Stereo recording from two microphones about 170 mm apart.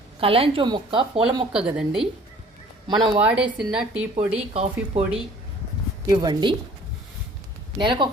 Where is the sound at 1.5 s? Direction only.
5° right (ahead or behind).